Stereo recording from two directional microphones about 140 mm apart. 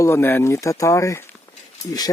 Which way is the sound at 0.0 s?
15° left (ahead or behind).